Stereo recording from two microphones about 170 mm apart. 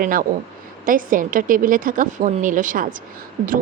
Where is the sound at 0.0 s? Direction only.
55° right (ahead or behind).